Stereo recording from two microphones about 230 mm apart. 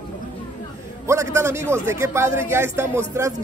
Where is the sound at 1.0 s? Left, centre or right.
Centre.